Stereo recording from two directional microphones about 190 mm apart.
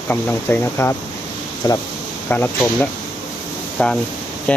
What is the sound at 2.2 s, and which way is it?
Speech, 10° left (ahead or behind).